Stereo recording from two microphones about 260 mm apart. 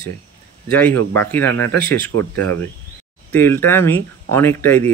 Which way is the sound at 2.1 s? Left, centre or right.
Right.